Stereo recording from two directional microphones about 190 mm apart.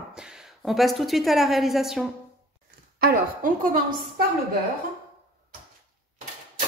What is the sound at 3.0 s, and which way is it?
Speech, 50° right (ahead or behind).